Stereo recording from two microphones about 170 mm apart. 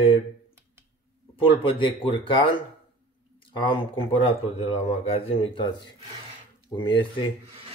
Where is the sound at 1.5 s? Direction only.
30° left (ahead or behind).